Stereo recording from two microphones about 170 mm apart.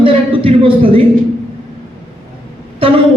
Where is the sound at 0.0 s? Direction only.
30° right (ahead or behind).